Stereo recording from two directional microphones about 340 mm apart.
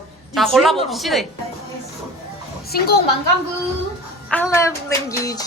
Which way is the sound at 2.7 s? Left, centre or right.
Left.